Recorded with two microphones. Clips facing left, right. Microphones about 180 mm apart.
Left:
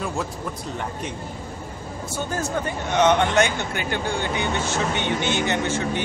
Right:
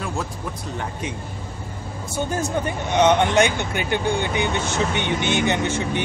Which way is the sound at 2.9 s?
15° right (ahead or behind).